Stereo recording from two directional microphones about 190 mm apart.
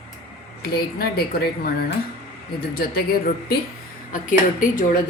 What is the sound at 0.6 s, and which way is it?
A woman's voice, 55° left (ahead or behind).